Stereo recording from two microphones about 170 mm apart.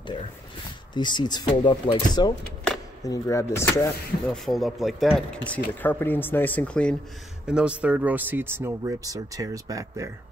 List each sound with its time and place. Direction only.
0.9 s speech: 25° left (ahead or behind)
4.3 s speech: centre (ahead or behind)
7.4 s speech: 5° right (ahead or behind)